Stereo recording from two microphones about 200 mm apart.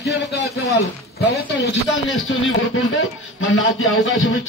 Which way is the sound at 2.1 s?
75° left (ahead or behind).